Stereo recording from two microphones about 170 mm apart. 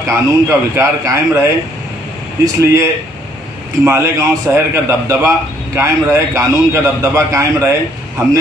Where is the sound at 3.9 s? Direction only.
15° right (ahead or behind).